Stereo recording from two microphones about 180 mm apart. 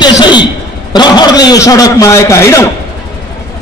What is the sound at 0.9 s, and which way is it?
A man's voice, 25° left (ahead or behind).